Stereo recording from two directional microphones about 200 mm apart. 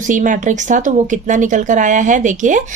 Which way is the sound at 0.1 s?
40° right (ahead or behind).